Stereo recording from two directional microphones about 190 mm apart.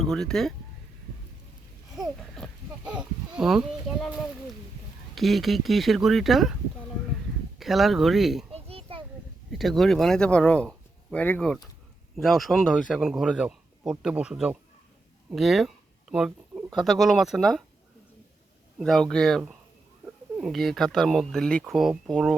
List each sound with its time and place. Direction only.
0.0 s speech: centre (ahead or behind)
2.3 s speech: centre (ahead or behind)
7.6 s speech: centre (ahead or behind)
8.5 s children playing: 30° right (ahead or behind)
9.5 s speech: centre (ahead or behind)
15.3 s a sound: centre (ahead or behind)
16.7 s speech: centre (ahead or behind)
18.8 s speech: centre (ahead or behind)